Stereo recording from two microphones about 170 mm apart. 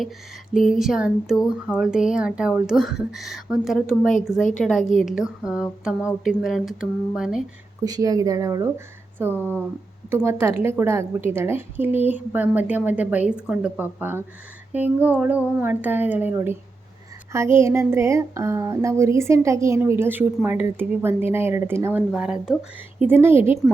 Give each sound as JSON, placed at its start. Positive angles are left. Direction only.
{"t": 0.5, "sound": "speech", "side_deg": 0}
{"t": 7.9, "sound": "speech", "side_deg": -20}